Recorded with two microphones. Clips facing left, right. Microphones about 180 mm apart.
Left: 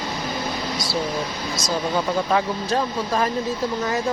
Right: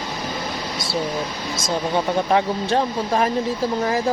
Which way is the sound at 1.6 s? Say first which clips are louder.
Right 2 dB; 25° right (ahead or behind).